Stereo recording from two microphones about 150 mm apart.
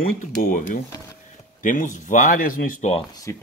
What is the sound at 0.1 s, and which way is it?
Speech, 65° left (ahead or behind).